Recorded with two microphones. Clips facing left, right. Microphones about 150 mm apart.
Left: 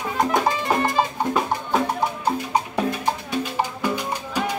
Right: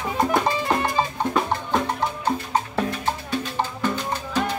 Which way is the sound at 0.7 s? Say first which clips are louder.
Left 2 dB; 10° left (ahead or behind).